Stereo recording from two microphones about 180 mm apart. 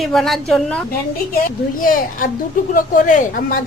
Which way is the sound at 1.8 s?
50° left (ahead or behind).